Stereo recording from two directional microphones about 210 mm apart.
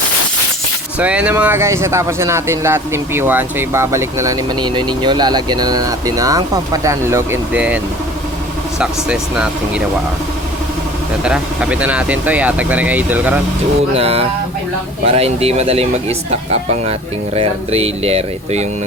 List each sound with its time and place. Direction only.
0.9 s speech: 5° right (ahead or behind)
8.8 s speech: 5° right (ahead or behind)
11.2 s speech: 5° right (ahead or behind)
13.9 s speech: 30° right (ahead or behind)